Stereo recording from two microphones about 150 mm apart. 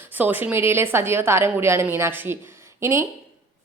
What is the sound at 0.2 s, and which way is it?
A woman's voice, 10° right (ahead or behind).